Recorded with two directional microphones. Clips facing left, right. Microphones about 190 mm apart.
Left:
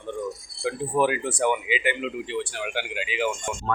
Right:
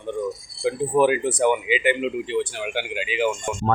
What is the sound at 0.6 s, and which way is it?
Speech, 20° right (ahead or behind).